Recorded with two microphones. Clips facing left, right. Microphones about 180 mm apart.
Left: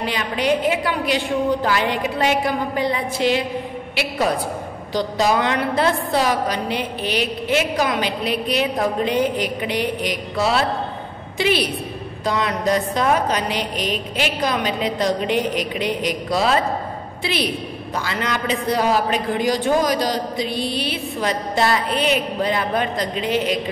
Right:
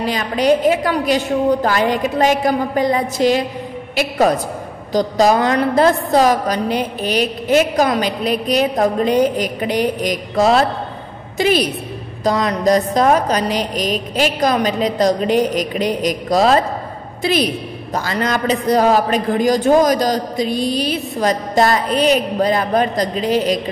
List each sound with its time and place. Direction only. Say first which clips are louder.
0.0 s a woman's voice: right 5 dB; 40° right (ahead or behind)